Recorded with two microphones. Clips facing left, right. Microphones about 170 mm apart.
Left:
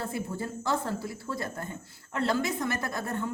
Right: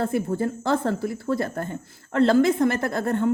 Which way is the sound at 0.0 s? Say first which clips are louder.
Right 10 dB; 60° right (ahead or behind).